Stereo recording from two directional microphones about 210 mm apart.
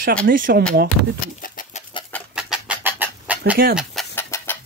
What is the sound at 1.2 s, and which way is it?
Bird, 40° left (ahead or behind).